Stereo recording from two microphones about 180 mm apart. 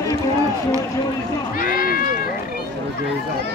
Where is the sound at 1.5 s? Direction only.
55° left (ahead or behind).